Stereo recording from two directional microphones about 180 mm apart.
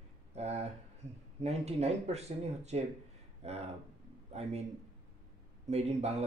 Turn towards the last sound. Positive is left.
turn(degrees=-35)  # may be behind; listen again after turning